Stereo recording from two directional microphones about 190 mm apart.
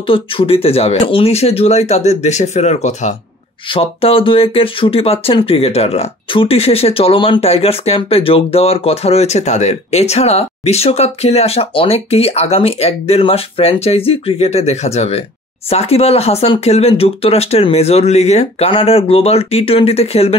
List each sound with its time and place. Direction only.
0.1 s speech: 30° left (ahead or behind)